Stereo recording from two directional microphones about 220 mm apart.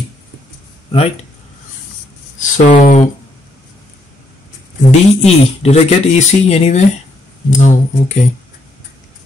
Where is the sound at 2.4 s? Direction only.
35° left (ahead or behind).